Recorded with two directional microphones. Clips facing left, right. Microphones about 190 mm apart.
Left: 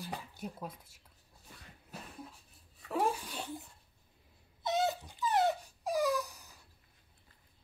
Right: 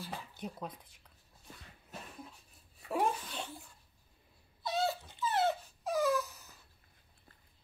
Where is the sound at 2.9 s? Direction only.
5° left (ahead or behind).